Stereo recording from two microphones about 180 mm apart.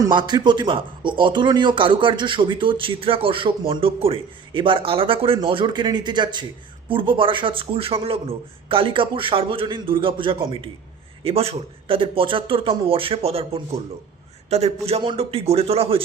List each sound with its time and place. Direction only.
0.0 s a man's voice: 25° right (ahead or behind)